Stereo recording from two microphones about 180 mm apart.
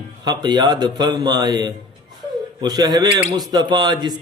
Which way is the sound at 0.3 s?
25° right (ahead or behind).